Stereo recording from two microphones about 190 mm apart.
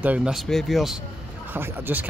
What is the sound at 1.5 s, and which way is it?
Speech, 10° right (ahead or behind).